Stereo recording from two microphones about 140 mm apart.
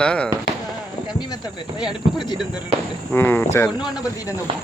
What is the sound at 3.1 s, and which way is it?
Speech, 15° left (ahead or behind).